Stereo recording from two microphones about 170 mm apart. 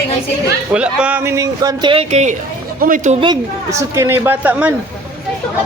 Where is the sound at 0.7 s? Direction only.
5° right (ahead or behind); by 2.3 s 40° right (ahead or behind).